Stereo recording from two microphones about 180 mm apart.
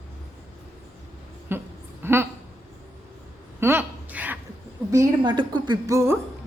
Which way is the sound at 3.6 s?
10° right (ahead or behind).